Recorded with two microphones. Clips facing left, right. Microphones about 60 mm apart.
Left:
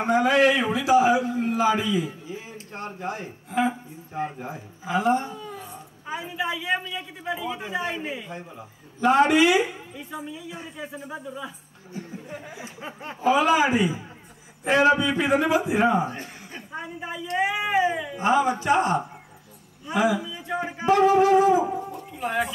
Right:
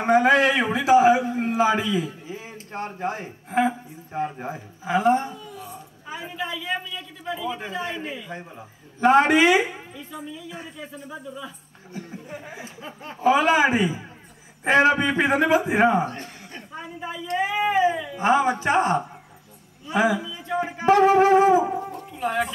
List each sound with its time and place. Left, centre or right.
0.0 s speech: right
2.2 s a sound: right
3.0 s speech: right
5.3 s a sound: left
6.2 s speech: centre
8.3 s speech: right
9.9 s speech: centre
12.6 s a sound: left
13.3 s speech: right
16.1 s speech: centre
18.2 s speech: right
20.2 s music: centre
20.8 s speech: right
22.2 s speech: centre